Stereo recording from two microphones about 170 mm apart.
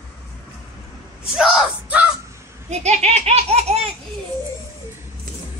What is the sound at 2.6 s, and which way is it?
Laughter, 40° right (ahead or behind).